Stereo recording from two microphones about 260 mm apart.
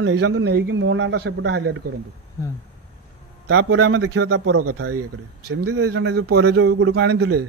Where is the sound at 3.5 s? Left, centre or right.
Right.